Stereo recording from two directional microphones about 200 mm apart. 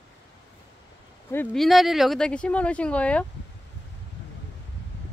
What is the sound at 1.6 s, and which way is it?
Speech, centre (ahead or behind).